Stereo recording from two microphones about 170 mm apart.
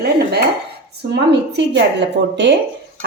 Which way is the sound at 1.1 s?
85° right.